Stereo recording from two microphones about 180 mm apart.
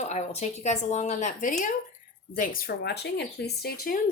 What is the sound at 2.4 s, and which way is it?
Speech, 55° left (ahead or behind).